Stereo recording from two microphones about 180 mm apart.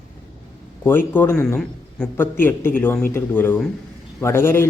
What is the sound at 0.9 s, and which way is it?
Speech, 10° left (ahead or behind).